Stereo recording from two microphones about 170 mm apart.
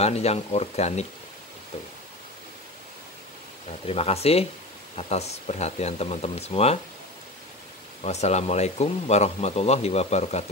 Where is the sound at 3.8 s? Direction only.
35° left (ahead or behind).